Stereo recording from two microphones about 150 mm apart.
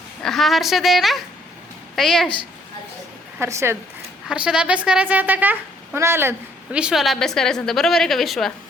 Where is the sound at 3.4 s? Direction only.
20° right (ahead or behind).